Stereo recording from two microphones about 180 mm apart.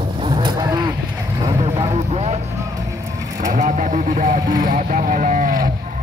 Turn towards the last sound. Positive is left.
turn(degrees=-45)  # may be behind; listen again after turning